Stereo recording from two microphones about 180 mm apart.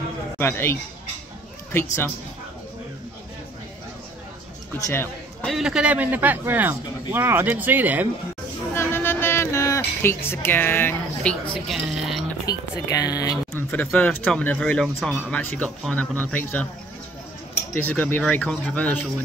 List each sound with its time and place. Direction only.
0.4 s speech: 15° left (ahead or behind)
4.7 s speech: 15° left (ahead or behind)
5.5 s a man's voice: 5° right (ahead or behind)
8.7 s music: 10° left (ahead or behind)
11.6 s speech: centre (ahead or behind)
12.4 s speech: 20° left (ahead or behind)
13.6 s speech: 10° left (ahead or behind)
17.7 s speech: 10° left (ahead or behind)